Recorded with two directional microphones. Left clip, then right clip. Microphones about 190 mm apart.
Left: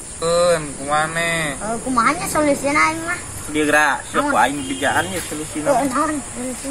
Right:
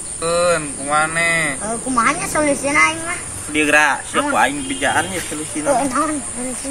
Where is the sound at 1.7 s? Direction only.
20° right (ahead or behind).